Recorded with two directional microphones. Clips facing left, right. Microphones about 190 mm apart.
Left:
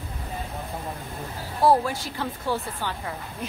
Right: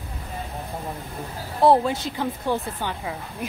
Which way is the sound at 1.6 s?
20° right (ahead or behind).